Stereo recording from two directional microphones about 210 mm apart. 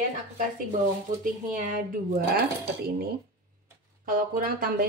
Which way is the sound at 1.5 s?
40° right (ahead or behind).